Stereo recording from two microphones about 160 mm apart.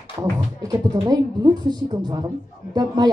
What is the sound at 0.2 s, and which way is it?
Speech, 25° right (ahead or behind).